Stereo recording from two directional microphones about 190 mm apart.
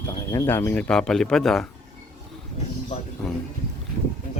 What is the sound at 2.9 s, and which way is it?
Speech, 35° left (ahead or behind).